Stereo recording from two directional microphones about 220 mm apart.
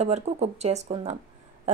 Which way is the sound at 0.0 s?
30° right (ahead or behind).